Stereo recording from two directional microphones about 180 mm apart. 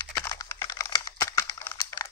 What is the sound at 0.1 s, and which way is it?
Computer keyboard, 15° left (ahead or behind).